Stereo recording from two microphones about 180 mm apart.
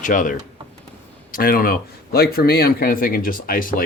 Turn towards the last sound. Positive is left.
turn(degrees=50)  # may be behind; listen again after turning